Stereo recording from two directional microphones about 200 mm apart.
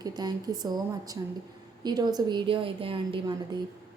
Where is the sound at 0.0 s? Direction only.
20° right (ahead or behind).